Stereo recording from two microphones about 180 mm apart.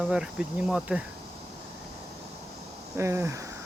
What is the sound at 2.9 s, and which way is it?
Speech, 15° right (ahead or behind).